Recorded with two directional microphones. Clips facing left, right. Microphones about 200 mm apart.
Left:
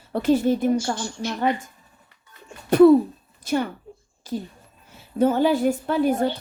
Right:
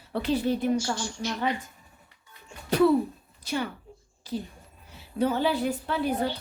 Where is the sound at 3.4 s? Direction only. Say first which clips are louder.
Left 6 dB; 50° left (ahead or behind).